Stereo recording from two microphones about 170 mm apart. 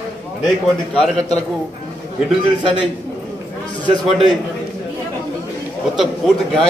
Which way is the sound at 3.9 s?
25° right (ahead or behind).